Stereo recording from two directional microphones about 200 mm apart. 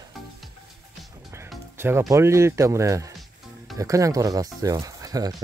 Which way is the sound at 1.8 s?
10° right (ahead or behind).